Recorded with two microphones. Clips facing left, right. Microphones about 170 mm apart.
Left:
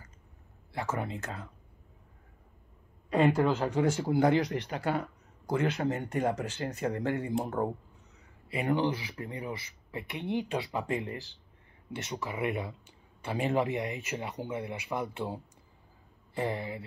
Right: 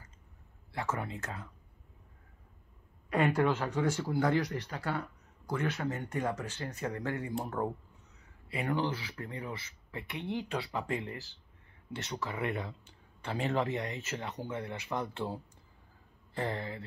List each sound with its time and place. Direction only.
0.7 s speech: 25° left (ahead or behind)
3.1 s speech: 25° left (ahead or behind)